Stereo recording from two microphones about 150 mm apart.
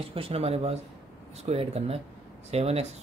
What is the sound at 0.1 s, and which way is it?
Speech, 40° right (ahead or behind).